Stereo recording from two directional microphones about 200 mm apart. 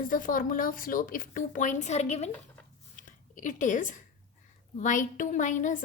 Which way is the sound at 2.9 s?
40° left (ahead or behind).